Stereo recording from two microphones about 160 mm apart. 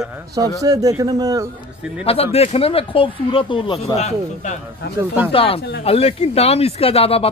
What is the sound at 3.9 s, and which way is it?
Speech, 45° left (ahead or behind).